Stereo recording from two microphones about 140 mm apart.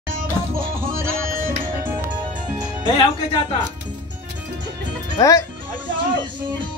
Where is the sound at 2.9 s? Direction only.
35° left (ahead or behind).